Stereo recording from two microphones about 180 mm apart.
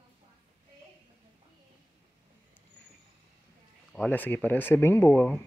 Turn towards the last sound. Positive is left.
turn(degrees=5)  # may be behind; listen again after turning